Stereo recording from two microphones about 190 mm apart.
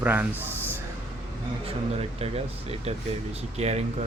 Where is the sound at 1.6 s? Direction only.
30° right (ahead or behind).